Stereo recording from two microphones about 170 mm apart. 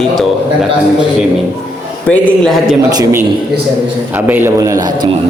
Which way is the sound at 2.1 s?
10° left (ahead or behind).